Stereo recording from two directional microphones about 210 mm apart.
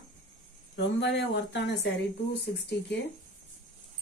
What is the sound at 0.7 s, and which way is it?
A woman's voice, 55° left (ahead or behind).